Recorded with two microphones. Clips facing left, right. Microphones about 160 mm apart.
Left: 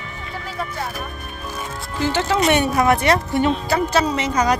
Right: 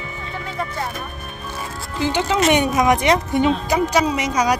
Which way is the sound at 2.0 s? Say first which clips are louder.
Even; 15° right (ahead or behind).